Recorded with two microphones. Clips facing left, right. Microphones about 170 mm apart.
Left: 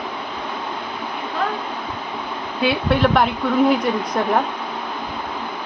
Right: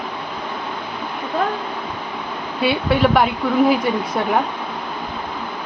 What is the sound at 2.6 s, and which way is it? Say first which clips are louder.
Speech: right 1 dB; centre (ahead or behind).